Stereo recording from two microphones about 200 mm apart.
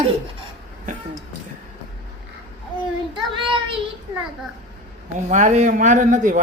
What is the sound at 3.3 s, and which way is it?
Speech, 25° right (ahead or behind).